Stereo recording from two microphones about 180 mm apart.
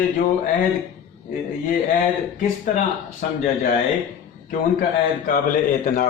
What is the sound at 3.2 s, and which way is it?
Speech, 50° left (ahead or behind).